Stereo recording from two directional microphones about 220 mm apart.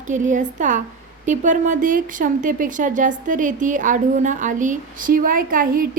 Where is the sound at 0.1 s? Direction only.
35° right (ahead or behind).